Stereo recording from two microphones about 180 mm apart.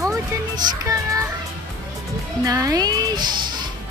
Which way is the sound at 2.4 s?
20° right (ahead or behind).